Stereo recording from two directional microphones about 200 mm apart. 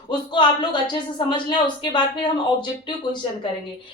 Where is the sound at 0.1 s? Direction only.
25° left (ahead or behind).